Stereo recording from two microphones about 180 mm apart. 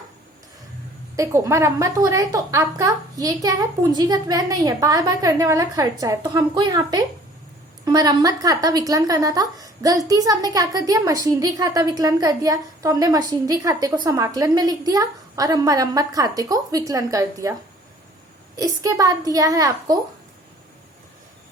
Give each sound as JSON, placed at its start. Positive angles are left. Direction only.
{"t": 1.1, "sound": "a woman's voice", "side_deg": -15}
{"t": 18.5, "sound": "a woman's voice", "side_deg": -20}